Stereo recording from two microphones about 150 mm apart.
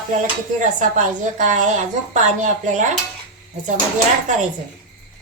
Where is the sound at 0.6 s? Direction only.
55° right (ahead or behind).